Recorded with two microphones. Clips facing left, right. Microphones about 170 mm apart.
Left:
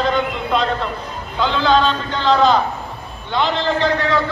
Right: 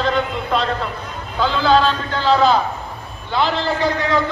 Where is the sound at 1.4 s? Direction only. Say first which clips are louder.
Even; 5° right (ahead or behind).